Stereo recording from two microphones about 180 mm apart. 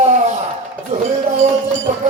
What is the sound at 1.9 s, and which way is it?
Music, 40° right (ahead or behind).